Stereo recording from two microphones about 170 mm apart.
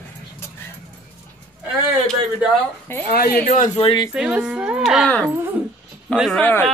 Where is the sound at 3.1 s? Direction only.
60° left (ahead or behind).